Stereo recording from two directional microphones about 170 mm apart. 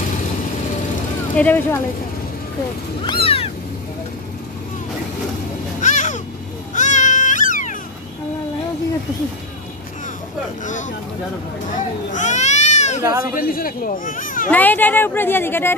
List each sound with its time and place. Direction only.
1.3 s a woman's voice: 10° left (ahead or behind)
3.1 s cat: 35° left (ahead or behind)
5.8 s babbling: 45° left (ahead or behind)
6.7 s music: 45° left (ahead or behind)
10.6 s speech: 45° left (ahead or behind)
11.7 s a sound: 45° left (ahead or behind)
13.3 s speech: 55° left (ahead or behind)
14.5 s a woman's voice: 10° left (ahead or behind)